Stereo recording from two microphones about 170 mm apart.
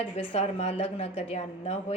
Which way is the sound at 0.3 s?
40° left (ahead or behind).